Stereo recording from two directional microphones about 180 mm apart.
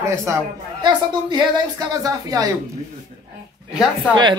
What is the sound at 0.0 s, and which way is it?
A woman's voice, 15° right (ahead or behind).